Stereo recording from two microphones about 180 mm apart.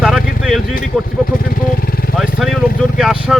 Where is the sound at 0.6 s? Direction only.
50° left (ahead or behind).